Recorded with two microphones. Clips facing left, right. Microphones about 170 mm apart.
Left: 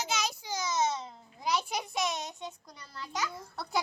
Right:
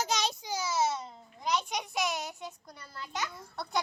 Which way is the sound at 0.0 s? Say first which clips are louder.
Right 2 dB; 35° right (ahead or behind).